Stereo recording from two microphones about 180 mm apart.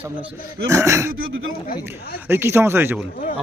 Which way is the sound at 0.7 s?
15° right (ahead or behind).